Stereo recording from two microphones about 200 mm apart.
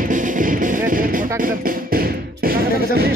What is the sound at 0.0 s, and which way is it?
Music, 40° right (ahead or behind).